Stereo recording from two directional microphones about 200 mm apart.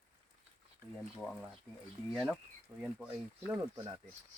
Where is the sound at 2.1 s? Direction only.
Centre (ahead or behind).